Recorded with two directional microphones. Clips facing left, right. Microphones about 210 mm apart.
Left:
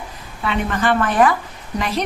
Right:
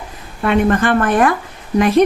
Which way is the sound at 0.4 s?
55° right (ahead or behind).